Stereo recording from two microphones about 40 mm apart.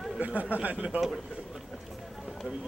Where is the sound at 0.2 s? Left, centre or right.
Right.